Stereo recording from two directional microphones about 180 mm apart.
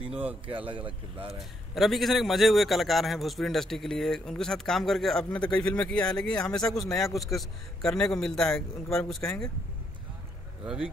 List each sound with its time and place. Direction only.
0.0 s speech: 5° right (ahead or behind)
0.5 s speech: 30° right (ahead or behind)
1.4 s a man's voice: centre (ahead or behind)
10.6 s speech: 5° right (ahead or behind)